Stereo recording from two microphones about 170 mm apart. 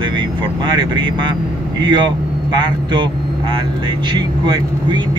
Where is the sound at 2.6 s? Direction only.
25° right (ahead or behind).